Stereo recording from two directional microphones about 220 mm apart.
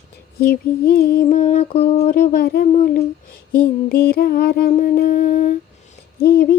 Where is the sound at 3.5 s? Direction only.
45° left (ahead or behind).